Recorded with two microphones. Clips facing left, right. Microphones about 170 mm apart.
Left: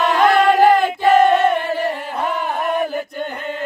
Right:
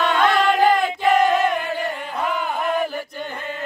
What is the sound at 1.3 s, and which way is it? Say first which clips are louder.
Chant: left 4 dB; 30° left (ahead or behind).